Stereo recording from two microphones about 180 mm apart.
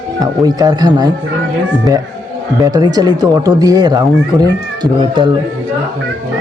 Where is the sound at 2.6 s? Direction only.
20° right (ahead or behind).